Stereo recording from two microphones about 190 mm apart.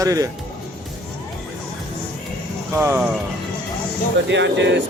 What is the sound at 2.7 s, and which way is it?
Speech, 15° right (ahead or behind).